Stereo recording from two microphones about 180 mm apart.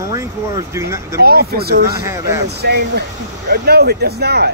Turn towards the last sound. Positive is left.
turn(degrees=-65)  # may be behind; listen again after turning